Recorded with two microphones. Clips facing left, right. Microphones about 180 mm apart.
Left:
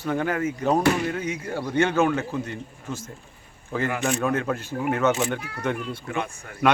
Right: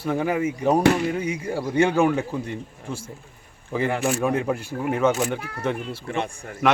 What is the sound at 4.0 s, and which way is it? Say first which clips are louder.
Speech: right 2 dB; 5° right (ahead or behind).